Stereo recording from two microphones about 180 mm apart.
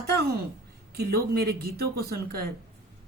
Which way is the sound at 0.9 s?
60° right (ahead or behind).